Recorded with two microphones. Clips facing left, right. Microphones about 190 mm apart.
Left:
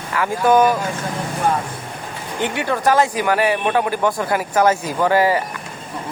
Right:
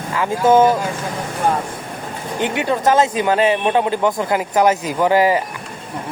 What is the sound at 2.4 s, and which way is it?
Speech, 20° right (ahead or behind).